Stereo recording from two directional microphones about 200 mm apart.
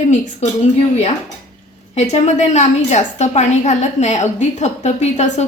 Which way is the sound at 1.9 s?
35° left (ahead or behind).